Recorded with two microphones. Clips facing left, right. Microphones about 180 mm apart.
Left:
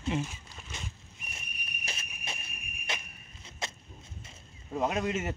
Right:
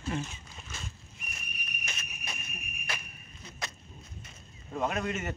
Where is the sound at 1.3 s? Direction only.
30° left (ahead or behind).